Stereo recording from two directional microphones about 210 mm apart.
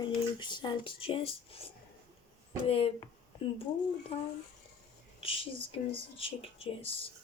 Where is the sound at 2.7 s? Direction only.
25° left (ahead or behind).